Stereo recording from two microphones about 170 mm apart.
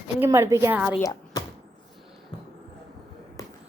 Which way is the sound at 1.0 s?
20° left (ahead or behind).